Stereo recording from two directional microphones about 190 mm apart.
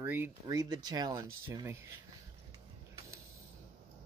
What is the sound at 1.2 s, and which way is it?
Speech, 90° right.